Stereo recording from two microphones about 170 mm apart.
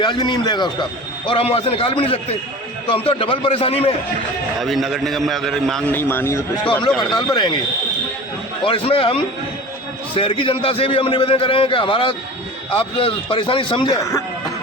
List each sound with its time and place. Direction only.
0.0 s a man's voice: 25° left (ahead or behind)
4.6 s a man's voice: centre (ahead or behind)
6.0 s a man's voice: 15° left (ahead or behind)
7.2 s a man's voice: 25° left (ahead or behind)
8.6 s a man's voice: 30° left (ahead or behind)
10.2 s a man's voice: 30° left (ahead or behind)
13.9 s a man's voice: 15° left (ahead or behind)